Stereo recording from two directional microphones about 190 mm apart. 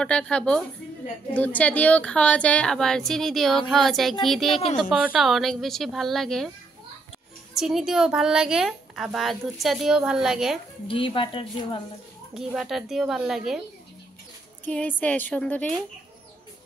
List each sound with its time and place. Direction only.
0.0 s a woman's voice: 5° left (ahead or behind)
7.5 s a woman's voice: centre (ahead or behind)
10.9 s a woman's voice: 25° left (ahead or behind)
12.4 s a woman's voice: centre (ahead or behind)
14.6 s a woman's voice: 10° left (ahead or behind)